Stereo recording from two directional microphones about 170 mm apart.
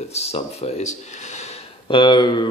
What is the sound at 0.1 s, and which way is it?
Speech, 40° left (ahead or behind).